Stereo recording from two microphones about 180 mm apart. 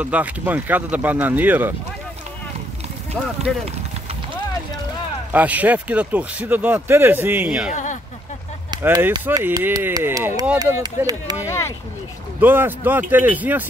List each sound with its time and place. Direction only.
0.0 s speech: 10° right (ahead or behind)
3.2 s speech: 5° left (ahead or behind)
5.3 s speech: 10° right (ahead or behind)
7.7 s a sound: 45° left (ahead or behind)
8.8 s speech: 10° right (ahead or behind)
11.4 s a sound: 15° left (ahead or behind)
12.4 s speech: 10° right (ahead or behind)